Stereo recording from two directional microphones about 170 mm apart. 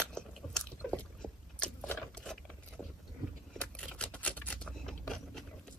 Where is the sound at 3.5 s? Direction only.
5° left (ahead or behind).